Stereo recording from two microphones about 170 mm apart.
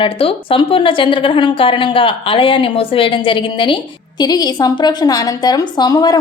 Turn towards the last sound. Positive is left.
turn(degrees=25)  # may be behind; listen again after turning